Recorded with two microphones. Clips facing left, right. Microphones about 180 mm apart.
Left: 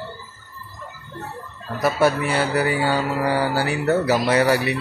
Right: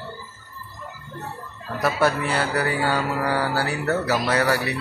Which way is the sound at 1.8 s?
10° left (ahead or behind).